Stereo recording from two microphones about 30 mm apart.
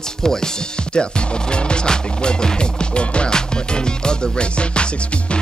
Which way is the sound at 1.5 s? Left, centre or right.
Left.